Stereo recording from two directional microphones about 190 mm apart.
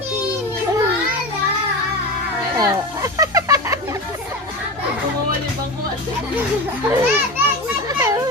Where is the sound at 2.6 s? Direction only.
15° right (ahead or behind).